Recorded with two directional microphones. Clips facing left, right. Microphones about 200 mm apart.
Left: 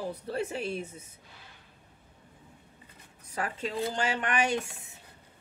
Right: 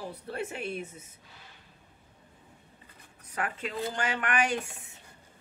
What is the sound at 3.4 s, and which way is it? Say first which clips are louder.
Speech: left 1 dB; 30° left (ahead or behind).